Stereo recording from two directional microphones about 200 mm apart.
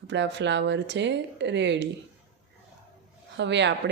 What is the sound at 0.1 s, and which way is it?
Speech, 65° right (ahead or behind).